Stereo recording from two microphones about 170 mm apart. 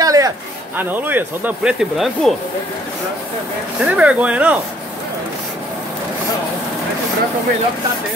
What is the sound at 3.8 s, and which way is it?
Speech, 10° right (ahead or behind).